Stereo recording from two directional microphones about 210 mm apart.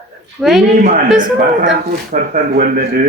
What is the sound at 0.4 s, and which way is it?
Speech, 5° right (ahead or behind).